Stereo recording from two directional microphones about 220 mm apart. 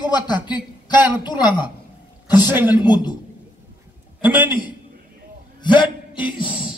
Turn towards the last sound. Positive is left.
turn(degrees=-5)  # may be behind; listen again after turning